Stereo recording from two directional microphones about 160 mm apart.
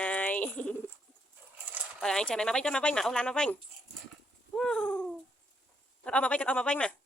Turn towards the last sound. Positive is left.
turn(degrees=5)  # may be behind; listen again after turning